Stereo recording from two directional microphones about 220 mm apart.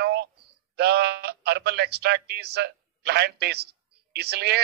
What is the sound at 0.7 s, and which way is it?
A man's voice, 50° right (ahead or behind).